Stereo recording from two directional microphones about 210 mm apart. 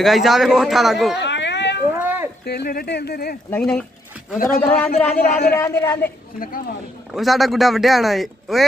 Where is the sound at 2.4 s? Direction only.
50° left (ahead or behind).